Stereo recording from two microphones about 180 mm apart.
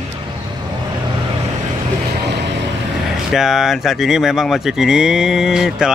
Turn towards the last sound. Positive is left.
turn(degrees=-5)  # may be behind; listen again after turning